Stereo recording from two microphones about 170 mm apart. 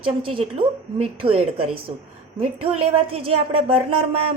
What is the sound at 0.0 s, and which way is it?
A woman's voice, 30° right (ahead or behind).